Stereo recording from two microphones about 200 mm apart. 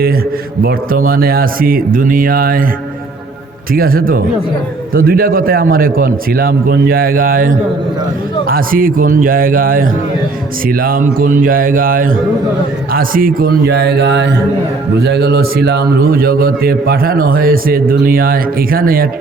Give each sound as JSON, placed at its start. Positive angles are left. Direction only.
{"t": 0.6, "sound": "a man's voice", "side_deg": -45}
{"t": 3.8, "sound": "a man's voice", "side_deg": -45}